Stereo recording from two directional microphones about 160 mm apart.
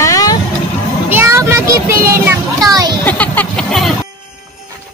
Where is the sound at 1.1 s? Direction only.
15° right (ahead or behind).